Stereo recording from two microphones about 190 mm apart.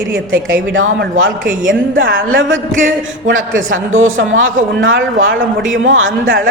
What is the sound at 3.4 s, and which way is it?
Speech, 45° right (ahead or behind).